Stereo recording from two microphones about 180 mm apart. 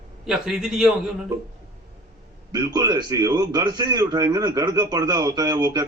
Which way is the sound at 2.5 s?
20° right (ahead or behind).